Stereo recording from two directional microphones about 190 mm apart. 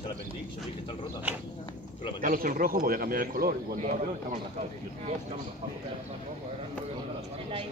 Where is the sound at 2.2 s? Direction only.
45° right (ahead or behind).